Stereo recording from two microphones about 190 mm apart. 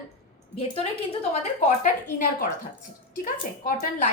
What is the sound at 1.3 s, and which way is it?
Speech, 40° left (ahead or behind).